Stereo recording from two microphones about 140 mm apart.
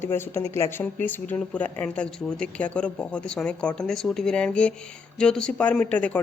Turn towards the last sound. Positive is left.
turn(degrees=10)  # may be behind; listen again after turning